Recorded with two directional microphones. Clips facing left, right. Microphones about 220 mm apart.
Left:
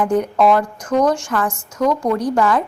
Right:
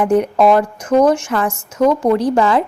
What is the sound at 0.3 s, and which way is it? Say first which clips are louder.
A woman's voice: right 3 dB; 25° right (ahead or behind).